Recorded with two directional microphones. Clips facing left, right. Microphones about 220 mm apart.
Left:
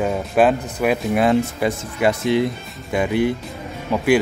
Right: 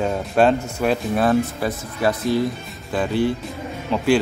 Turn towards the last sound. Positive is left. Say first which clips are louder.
# left 1 dB
turn(degrees=10)  # may be behind; listen again after turning